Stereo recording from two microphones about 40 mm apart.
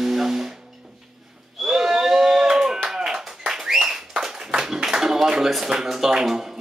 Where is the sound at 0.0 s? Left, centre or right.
Centre.